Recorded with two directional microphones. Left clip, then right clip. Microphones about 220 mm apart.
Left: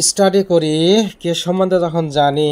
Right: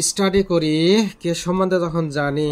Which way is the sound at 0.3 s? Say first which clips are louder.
Left 4 dB; 10° left (ahead or behind).